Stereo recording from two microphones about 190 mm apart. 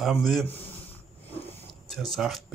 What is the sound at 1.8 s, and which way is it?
Speech, centre (ahead or behind).